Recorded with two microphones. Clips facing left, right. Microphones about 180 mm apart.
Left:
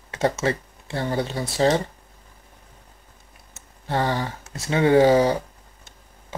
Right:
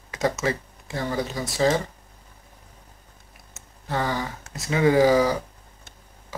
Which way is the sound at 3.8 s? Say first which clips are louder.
Left 3 dB; 30° left (ahead or behind).